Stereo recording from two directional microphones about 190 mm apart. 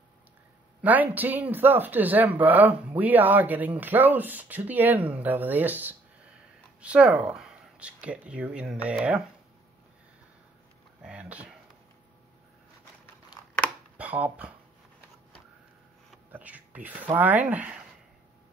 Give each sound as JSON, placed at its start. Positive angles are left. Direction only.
{"t": 0.8, "sound": "speech", "side_deg": -10}
{"t": 11.0, "sound": "speech", "side_deg": -5}
{"t": 13.3, "sound": "a sound", "side_deg": 25}
{"t": 13.9, "sound": "speech", "side_deg": -5}
{"t": 16.3, "sound": "speech", "side_deg": -10}